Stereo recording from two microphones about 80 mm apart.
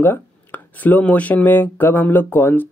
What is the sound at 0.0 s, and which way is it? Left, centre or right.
Speech, left.